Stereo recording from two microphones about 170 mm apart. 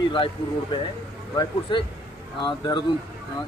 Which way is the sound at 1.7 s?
25° left (ahead or behind).